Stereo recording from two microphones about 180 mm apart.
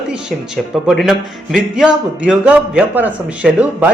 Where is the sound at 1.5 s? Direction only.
5° right (ahead or behind).